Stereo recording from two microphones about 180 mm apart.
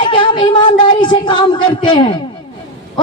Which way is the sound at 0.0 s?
25° left (ahead or behind).